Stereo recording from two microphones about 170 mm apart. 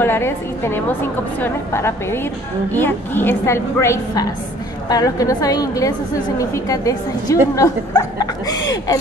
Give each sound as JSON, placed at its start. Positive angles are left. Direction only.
{"t": 0.0, "sound": "a woman's voice", "side_deg": 15}